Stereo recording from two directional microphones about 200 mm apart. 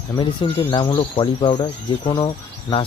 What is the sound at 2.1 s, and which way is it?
Speech, 25° left (ahead or behind).